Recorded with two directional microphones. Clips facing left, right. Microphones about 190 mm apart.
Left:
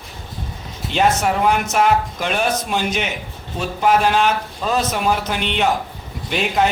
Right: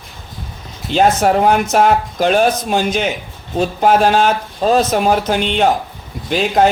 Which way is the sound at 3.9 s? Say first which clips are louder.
Right 3 dB; 40° right (ahead or behind).